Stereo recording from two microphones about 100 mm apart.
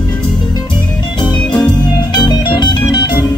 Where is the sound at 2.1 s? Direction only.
50° left (ahead or behind).